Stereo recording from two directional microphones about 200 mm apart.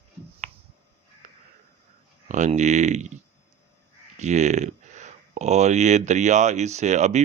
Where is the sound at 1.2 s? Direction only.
35° right (ahead or behind).